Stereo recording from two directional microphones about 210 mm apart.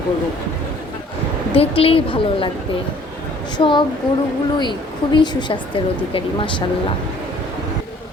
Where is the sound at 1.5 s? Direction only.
25° left (ahead or behind).